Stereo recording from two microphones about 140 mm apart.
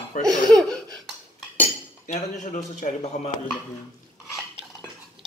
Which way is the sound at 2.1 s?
60° left (ahead or behind).